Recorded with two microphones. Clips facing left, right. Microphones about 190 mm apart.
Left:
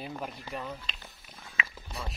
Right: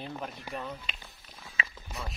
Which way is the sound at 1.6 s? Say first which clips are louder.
Even; 35° right (ahead or behind).